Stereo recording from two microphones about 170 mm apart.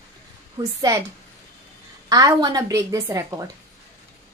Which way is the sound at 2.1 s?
20° right (ahead or behind).